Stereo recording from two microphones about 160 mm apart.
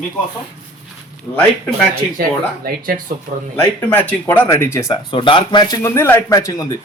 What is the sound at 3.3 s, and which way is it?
Speech, 65° right (ahead or behind).